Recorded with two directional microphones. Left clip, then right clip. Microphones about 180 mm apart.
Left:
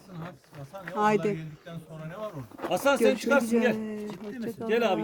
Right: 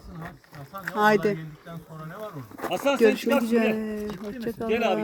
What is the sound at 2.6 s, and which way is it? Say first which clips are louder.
Speech: even; 75° right (ahead or behind).